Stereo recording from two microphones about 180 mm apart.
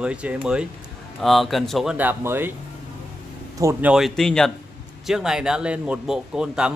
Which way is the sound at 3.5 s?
15° right (ahead or behind).